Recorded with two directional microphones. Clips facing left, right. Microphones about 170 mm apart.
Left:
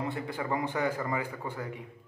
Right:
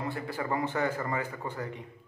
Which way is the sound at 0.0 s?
15° left (ahead or behind).